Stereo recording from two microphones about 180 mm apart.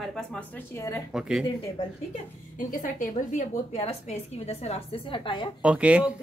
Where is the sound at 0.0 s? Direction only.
5° left (ahead or behind).